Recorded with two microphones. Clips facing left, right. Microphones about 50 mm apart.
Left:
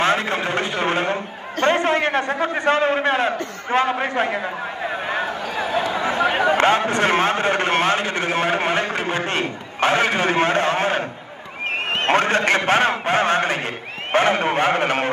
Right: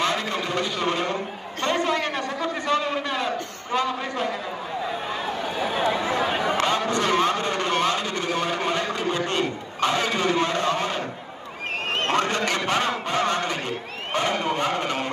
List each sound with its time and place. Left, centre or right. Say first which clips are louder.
0.0 s a man's voice: left 5 dB; left
12.1 s a man's voice: left 7 dB; left